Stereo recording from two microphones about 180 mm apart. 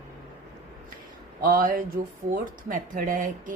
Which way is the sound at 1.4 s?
50° right (ahead or behind).